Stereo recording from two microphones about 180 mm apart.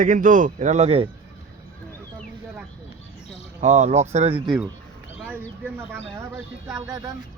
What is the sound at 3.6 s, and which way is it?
Speech, 40° right (ahead or behind).